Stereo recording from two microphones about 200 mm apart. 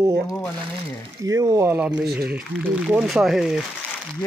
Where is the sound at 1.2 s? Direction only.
15° right (ahead or behind).